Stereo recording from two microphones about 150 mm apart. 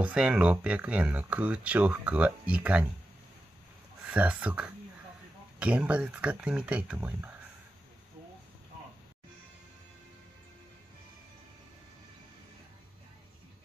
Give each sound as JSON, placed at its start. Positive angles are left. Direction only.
{"t": 0.0, "sound": "speech", "side_deg": -10}
{"t": 4.0, "sound": "speech", "side_deg": -10}